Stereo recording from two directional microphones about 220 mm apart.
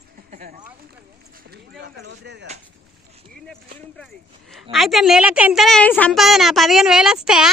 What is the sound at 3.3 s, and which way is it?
A woman's voice, 5° left (ahead or behind).